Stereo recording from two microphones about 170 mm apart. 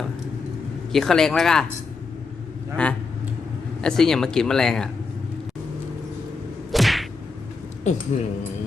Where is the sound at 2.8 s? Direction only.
5° left (ahead or behind).